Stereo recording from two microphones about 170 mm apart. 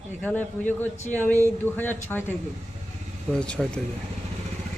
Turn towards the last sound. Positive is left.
turn(degrees=5)  # may be behind; listen again after turning